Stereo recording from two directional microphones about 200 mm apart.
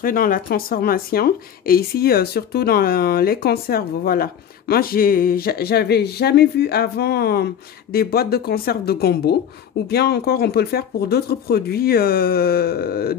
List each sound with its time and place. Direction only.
0.0 s speech: 45° left (ahead or behind)